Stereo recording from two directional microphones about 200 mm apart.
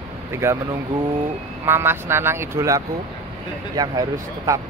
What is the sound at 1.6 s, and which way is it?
Speech, 10° right (ahead or behind).